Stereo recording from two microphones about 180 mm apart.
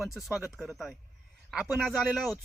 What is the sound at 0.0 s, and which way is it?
Speech, centre (ahead or behind).